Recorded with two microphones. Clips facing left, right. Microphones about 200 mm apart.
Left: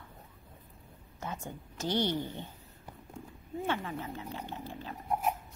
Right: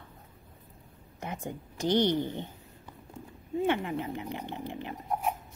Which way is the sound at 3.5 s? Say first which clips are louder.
Right 6 dB; 20° right (ahead or behind).